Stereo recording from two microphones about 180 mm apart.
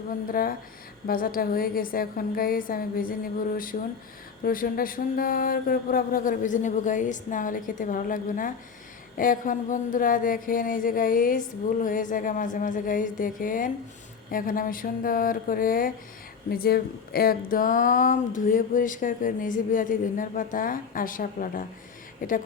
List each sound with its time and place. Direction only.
0.1 s speech: 50° left (ahead or behind)